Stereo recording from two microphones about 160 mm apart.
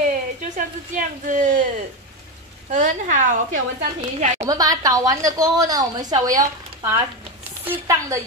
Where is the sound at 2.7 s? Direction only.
55° right (ahead or behind).